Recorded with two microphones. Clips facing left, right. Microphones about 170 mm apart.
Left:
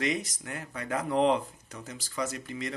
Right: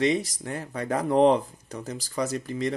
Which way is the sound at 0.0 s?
30° right (ahead or behind).